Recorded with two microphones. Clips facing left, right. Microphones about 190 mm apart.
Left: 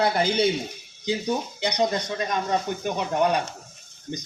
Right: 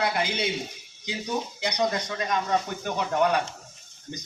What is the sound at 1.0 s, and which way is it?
Speech, 25° left (ahead or behind).